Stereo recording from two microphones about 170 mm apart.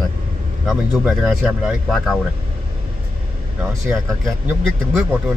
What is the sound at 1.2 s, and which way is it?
Speech, centre (ahead or behind).